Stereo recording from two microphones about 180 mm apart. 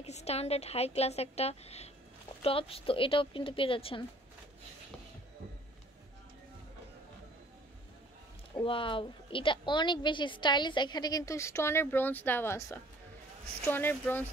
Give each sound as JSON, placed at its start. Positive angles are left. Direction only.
{"t": 0.0, "sound": "a woman's voice", "side_deg": 35}
{"t": 8.5, "sound": "a woman's voice", "side_deg": 30}